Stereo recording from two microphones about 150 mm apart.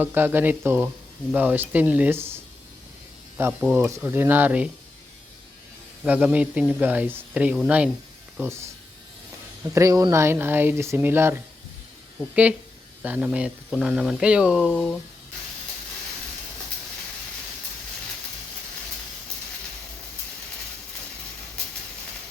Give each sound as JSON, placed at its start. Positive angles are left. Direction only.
{"t": 0.0, "sound": "speech", "side_deg": -15}
{"t": 3.6, "sound": "speech", "side_deg": -10}
{"t": 6.1, "sound": "speech", "side_deg": -10}
{"t": 9.7, "sound": "speech", "side_deg": -20}